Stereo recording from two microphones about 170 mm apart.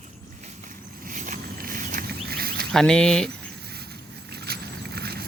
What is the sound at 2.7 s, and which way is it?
Speech, 5° left (ahead or behind).